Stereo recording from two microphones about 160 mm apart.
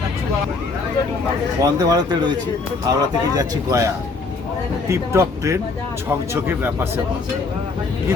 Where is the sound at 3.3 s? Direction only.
20° right (ahead or behind).